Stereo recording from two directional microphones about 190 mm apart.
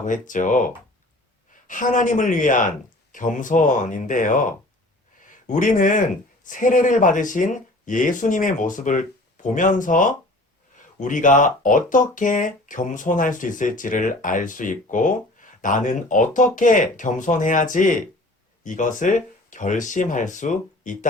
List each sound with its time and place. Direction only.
0.0 s speech: 45° left (ahead or behind)
1.6 s speech: 45° left (ahead or behind)